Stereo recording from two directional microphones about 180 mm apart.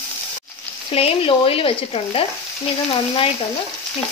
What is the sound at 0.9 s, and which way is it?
A woman's voice, 30° left (ahead or behind).